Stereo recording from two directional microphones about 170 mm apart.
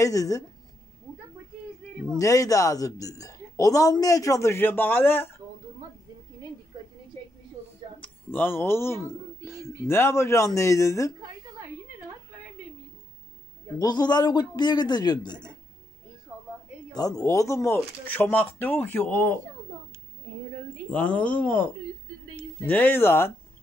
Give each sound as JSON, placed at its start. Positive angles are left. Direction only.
{"t": 0.0, "sound": "a woman's voice", "side_deg": 20}
{"t": 2.1, "sound": "a woman's voice", "side_deg": 20}
{"t": 6.7, "sound": "a sound", "side_deg": -25}
{"t": 8.0, "sound": "speech", "side_deg": 10}
{"t": 13.7, "sound": "a woman's voice", "side_deg": 25}
{"t": 16.3, "sound": "a sound", "side_deg": -10}
{"t": 16.9, "sound": "speech", "side_deg": 20}
{"t": 20.9, "sound": "speech", "side_deg": 10}
{"t": 22.7, "sound": "speech", "side_deg": 10}